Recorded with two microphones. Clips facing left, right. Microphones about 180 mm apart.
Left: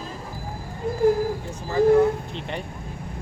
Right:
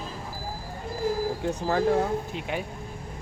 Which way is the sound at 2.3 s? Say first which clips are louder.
Even; 5° right (ahead or behind).